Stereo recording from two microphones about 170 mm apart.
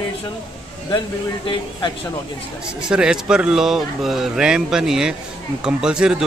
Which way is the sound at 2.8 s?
5° right (ahead or behind).